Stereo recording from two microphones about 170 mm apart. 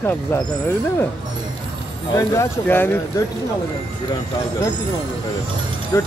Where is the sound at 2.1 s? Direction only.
15° left (ahead or behind).